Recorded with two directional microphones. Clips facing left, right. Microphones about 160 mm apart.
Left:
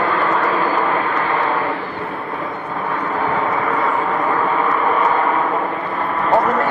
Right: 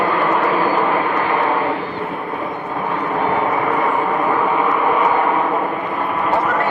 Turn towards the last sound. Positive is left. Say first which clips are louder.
# right 1 dB
turn(degrees=-10)  # may be behind; listen again after turning